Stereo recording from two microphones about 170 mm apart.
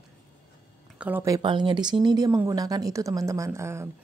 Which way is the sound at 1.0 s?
15° right (ahead or behind).